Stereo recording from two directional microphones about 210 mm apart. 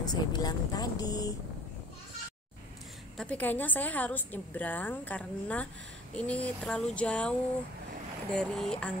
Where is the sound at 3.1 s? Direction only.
5° left (ahead or behind).